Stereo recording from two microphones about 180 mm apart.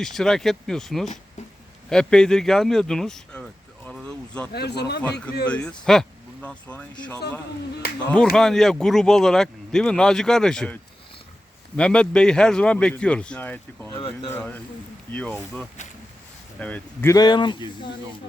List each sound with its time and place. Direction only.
0.0 s speech: centre (ahead or behind)
4.5 s speech: 65° left (ahead or behind)
5.5 s speech: 5° left (ahead or behind)
8.1 s speech: 5° left (ahead or behind)
11.8 s speech: 5° left (ahead or behind)
13.9 s speech: 30° left (ahead or behind)
14.3 s speech: 10° left (ahead or behind)
16.6 s speech: 5° left (ahead or behind); by 17.9 s 25° left (ahead or behind)